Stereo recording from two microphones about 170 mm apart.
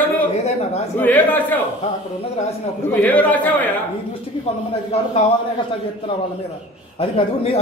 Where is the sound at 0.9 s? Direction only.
10° left (ahead or behind).